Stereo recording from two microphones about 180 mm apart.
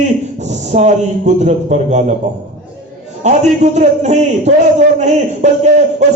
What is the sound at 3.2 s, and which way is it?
Speech, 40° right (ahead or behind).